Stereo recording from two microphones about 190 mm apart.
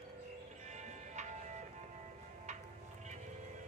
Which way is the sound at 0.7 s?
40° right (ahead or behind).